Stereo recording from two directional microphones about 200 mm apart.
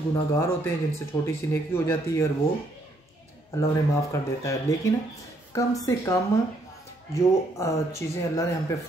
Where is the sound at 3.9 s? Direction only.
15° left (ahead or behind).